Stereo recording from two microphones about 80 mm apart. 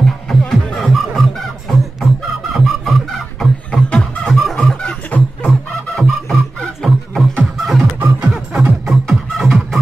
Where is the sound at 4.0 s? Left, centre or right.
Centre.